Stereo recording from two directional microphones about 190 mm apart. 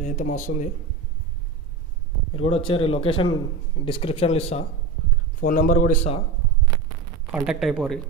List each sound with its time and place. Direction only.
0.0 s a man's voice: 40° left (ahead or behind)
2.3 s a man's voice: 30° left (ahead or behind)
5.4 s speech: 45° left (ahead or behind)
7.4 s speech: 5° right (ahead or behind)